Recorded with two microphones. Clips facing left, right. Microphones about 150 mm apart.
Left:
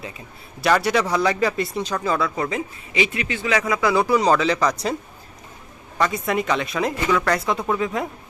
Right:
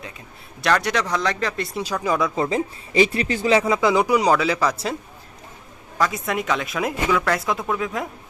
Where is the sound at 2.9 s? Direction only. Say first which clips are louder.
Right 5 dB; 35° right (ahead or behind); by 4.9 s 5° right (ahead or behind).